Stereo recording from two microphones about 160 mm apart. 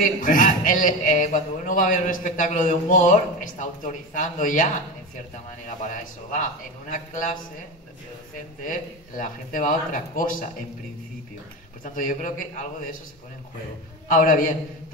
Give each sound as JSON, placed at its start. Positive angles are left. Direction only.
{"t": 0.0, "sound": "a man's voice", "side_deg": 60}
{"t": 8.6, "sound": "a man's voice", "side_deg": 55}
{"t": 11.8, "sound": "a man's voice", "side_deg": 55}
{"t": 14.0, "sound": "a man's voice", "side_deg": 60}